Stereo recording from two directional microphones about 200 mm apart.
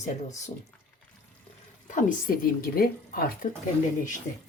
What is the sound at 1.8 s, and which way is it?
Speech, 45° left (ahead or behind).